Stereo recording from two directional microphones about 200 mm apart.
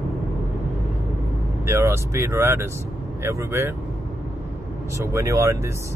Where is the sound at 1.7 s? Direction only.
15° right (ahead or behind).